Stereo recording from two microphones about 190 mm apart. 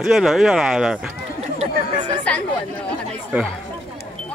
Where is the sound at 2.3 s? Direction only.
5° left (ahead or behind).